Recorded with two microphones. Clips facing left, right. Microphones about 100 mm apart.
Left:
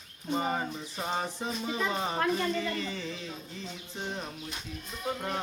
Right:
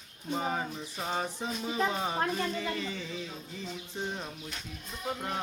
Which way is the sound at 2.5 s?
10° right (ahead or behind).